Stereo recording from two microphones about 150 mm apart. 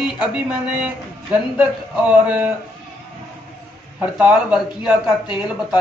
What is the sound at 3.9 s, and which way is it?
Speech, 10° right (ahead or behind).